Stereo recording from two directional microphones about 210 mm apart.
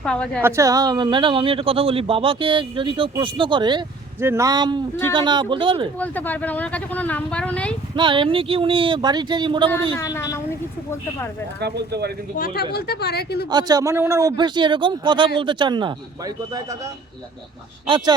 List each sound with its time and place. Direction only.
0.0 s a woman's voice: 5° left (ahead or behind)
0.4 s speech: 15° right (ahead or behind)
6.0 s speech: 10° left (ahead or behind)
7.9 s speech: 25° right (ahead or behind)
10.0 s speech: 15° left (ahead or behind)
11.6 s speech: 50° right (ahead or behind)
12.7 s a woman's voice: 50° left (ahead or behind)
13.5 s speech: 20° right (ahead or behind)